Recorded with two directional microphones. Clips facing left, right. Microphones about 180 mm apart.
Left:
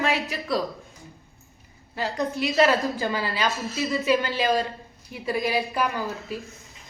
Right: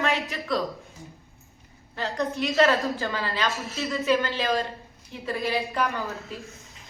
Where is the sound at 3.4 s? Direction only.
Centre (ahead or behind).